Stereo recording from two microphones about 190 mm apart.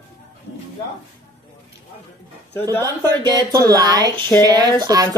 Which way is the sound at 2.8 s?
20° right (ahead or behind).